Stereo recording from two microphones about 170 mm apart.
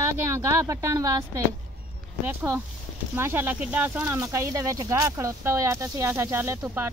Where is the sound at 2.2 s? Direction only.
15° right (ahead or behind).